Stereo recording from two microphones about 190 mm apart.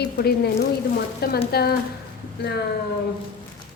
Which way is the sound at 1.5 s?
55° left (ahead or behind).